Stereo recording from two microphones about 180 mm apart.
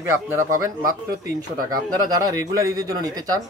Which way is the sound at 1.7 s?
20° right (ahead or behind).